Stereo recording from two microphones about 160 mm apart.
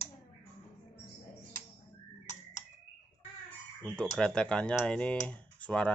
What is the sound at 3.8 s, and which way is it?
Speech, 5° left (ahead or behind).